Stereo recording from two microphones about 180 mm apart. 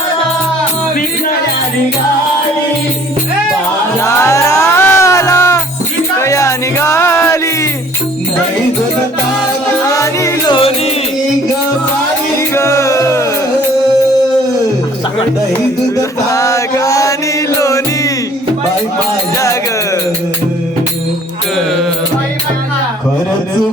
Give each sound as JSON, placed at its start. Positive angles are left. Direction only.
{"t": 4.0, "sound": "music", "side_deg": 15}
{"t": 9.8, "sound": "music", "side_deg": 15}
{"t": 12.5, "sound": "music", "side_deg": 15}
{"t": 16.0, "sound": "chant", "side_deg": 15}
{"t": 17.6, "sound": "music", "side_deg": 15}